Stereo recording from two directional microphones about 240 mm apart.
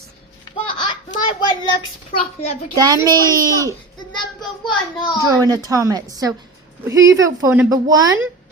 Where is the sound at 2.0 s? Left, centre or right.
Left.